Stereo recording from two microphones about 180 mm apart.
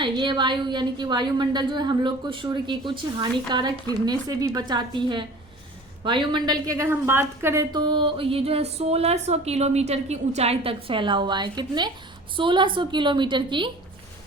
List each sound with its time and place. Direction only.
0.0 s a woman's voice: 25° right (ahead or behind)